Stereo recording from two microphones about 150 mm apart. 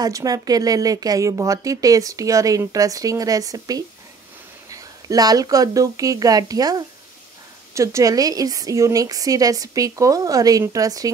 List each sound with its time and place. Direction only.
0.0 s speech: 25° right (ahead or behind)